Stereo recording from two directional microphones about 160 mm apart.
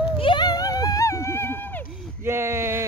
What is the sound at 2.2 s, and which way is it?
Speech, 15° right (ahead or behind).